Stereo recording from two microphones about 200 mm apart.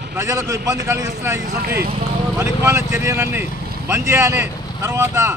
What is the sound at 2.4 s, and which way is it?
A man's voice, 15° right (ahead or behind).